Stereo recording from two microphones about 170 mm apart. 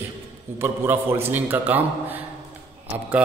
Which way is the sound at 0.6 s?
15° right (ahead or behind).